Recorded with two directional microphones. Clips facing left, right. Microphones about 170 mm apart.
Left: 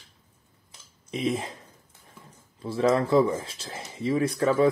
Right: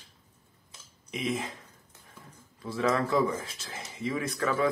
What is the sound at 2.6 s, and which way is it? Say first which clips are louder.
Speech: left 5 dB; 30° left (ahead or behind).